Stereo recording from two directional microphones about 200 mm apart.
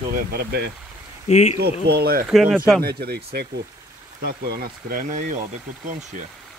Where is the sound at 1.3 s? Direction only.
35° left (ahead or behind).